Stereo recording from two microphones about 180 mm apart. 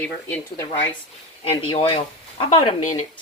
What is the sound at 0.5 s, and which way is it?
Speech, 20° left (ahead or behind).